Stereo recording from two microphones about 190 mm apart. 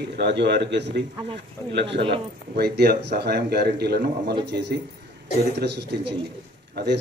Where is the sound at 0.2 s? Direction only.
60° right (ahead or behind).